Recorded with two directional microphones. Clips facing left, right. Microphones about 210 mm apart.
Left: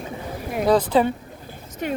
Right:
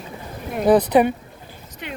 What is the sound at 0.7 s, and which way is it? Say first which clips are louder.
Speech: right 3 dB; 20° right (ahead or behind).